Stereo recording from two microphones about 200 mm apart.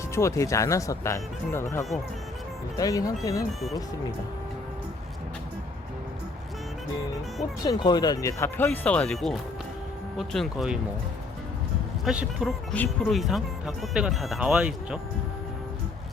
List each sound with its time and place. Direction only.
0.1 s speech: 15° left (ahead or behind)
2.7 s speech: 15° left (ahead or behind)
7.6 s speech: 20° left (ahead or behind); by 10.8 s centre (ahead or behind)
12.0 s speech: 5° right (ahead or behind)